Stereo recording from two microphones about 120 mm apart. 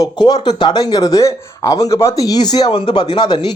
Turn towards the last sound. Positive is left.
turn(degrees=40)  # may be behind; listen again after turning